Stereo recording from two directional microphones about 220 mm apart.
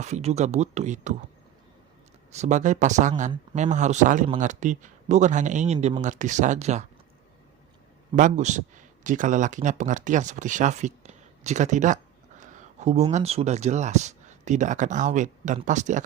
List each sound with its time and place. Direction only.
0.0 s speech: 30° right (ahead or behind)
2.3 s speech: 30° right (ahead or behind)
8.1 s speech: 35° right (ahead or behind)